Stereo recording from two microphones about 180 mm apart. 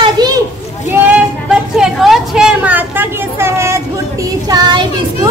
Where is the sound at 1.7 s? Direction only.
Centre (ahead or behind).